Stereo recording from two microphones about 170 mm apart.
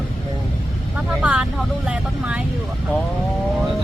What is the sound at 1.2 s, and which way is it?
Speech, 5° right (ahead or behind).